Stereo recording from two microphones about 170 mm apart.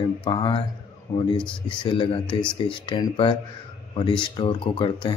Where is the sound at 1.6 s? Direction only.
30° left (ahead or behind).